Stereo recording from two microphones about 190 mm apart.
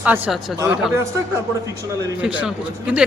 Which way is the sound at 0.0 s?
10° right (ahead or behind).